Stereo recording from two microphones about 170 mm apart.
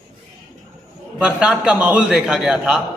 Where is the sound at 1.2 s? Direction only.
5° right (ahead or behind).